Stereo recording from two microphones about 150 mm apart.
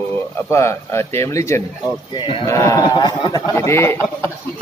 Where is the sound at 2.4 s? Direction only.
20° left (ahead or behind).